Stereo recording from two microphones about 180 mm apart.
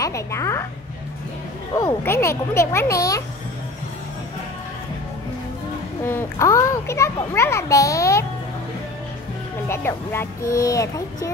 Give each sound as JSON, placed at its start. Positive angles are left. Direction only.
{"t": 0.0, "sound": "a child's voice", "side_deg": 15}
{"t": 2.0, "sound": "a child's voice", "side_deg": 15}
{"t": 6.0, "sound": "a child's voice", "side_deg": 15}
{"t": 9.7, "sound": "a child's voice", "side_deg": 15}